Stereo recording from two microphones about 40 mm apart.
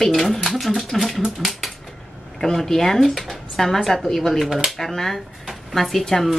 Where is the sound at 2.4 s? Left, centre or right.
Centre.